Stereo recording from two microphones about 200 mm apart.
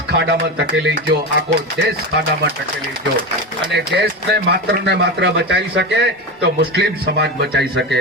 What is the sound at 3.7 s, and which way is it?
A man's voice, 55° right (ahead or behind).